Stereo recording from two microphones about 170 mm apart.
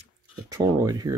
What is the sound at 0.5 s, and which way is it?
Speech, 20° right (ahead or behind).